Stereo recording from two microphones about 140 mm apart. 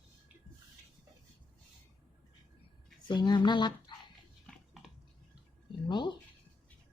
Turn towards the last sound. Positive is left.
turn(degrees=35)  # may be behind; listen again after turning